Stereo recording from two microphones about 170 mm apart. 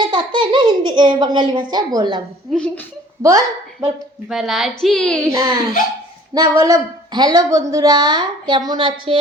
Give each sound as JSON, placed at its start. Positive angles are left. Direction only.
{"t": 0.0, "sound": "a sound", "side_deg": -25}
{"t": 1.7, "sound": "a woman's voice", "side_deg": -25}
{"t": 2.5, "sound": "a woman's voice", "side_deg": 5}
{"t": 3.2, "sound": "a woman's voice", "side_deg": -20}
{"t": 4.3, "sound": "a woman's voice", "side_deg": 0}
{"t": 5.3, "sound": "a woman's voice", "side_deg": -20}
{"t": 6.6, "sound": "a woman's voice", "side_deg": -20}